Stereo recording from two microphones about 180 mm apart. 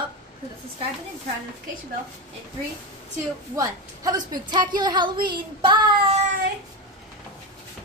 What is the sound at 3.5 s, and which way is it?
A woman's voice, 20° right (ahead or behind).